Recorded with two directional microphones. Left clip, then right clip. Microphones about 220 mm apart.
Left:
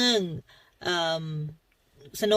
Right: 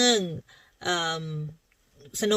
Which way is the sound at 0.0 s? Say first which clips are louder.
Right 2 dB; 20° right (ahead or behind).